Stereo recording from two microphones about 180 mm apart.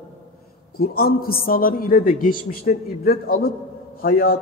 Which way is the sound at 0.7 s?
55° left (ahead or behind).